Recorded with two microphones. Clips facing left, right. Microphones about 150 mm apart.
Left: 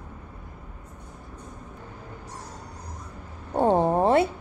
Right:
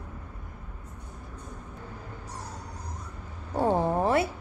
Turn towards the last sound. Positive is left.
turn(degrees=30)  # may be behind; listen again after turning